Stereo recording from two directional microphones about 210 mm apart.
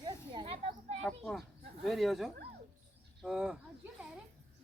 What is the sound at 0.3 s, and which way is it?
Children playing, 25° right (ahead or behind).